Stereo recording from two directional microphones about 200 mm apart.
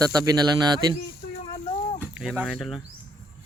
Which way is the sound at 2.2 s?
Centre (ahead or behind).